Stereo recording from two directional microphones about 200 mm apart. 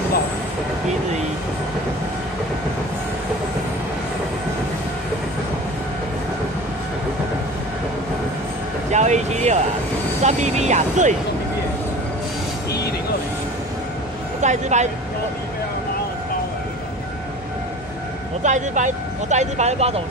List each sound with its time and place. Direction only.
8.9 s speech: 35° right (ahead or behind)
14.4 s speech: 35° right (ahead or behind)
18.4 s speech: 35° right (ahead or behind)